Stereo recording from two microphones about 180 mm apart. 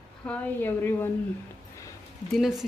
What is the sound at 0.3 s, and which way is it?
Speech, 10° left (ahead or behind).